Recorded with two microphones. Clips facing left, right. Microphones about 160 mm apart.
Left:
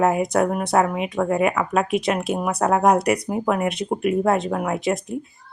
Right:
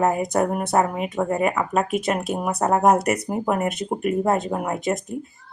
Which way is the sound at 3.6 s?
40° right (ahead or behind).